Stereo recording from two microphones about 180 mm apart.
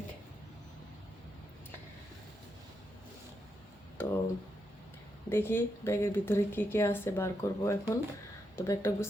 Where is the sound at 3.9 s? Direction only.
15° left (ahead or behind).